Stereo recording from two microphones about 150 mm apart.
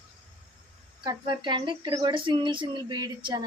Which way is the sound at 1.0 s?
30° right (ahead or behind).